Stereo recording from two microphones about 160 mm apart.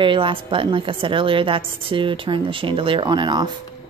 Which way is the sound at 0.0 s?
30° right (ahead or behind).